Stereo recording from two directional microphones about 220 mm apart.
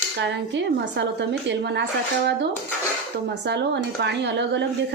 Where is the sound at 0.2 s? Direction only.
50° right (ahead or behind).